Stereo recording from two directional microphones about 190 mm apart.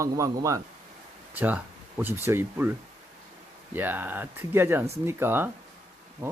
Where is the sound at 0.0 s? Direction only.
15° right (ahead or behind).